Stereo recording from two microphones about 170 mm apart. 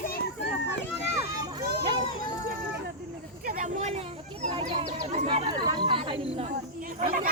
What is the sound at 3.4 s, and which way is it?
Children playing, 50° right (ahead or behind).